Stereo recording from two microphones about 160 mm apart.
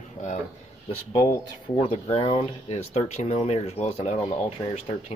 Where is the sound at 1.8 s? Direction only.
40° left (ahead or behind).